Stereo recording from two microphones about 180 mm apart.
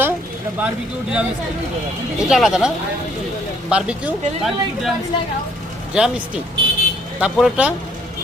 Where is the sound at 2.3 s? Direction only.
5° right (ahead or behind).